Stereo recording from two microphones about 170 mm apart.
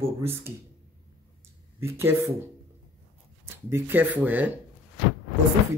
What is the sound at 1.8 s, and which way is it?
Speech, 15° right (ahead or behind).